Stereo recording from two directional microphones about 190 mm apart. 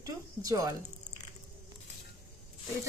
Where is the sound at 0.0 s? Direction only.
20° right (ahead or behind).